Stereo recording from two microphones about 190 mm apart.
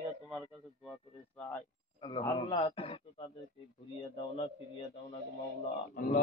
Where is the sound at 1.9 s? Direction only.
25° left (ahead or behind).